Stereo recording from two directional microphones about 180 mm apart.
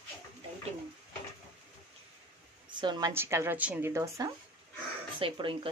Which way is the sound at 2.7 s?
25° right (ahead or behind).